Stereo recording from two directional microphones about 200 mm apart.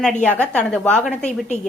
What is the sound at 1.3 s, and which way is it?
Speech, 35° left (ahead or behind).